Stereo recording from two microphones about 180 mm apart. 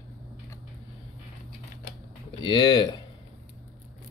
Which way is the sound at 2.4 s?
25° left (ahead or behind).